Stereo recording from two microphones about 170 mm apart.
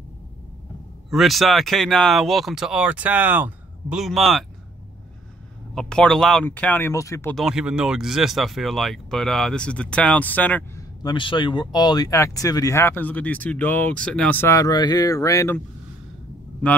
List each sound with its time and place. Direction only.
1.1 s speech: centre (ahead or behind)
5.8 s speech: 5° left (ahead or behind)
7.3 s speech: 5° right (ahead or behind)
11.0 s speech: 25° left (ahead or behind)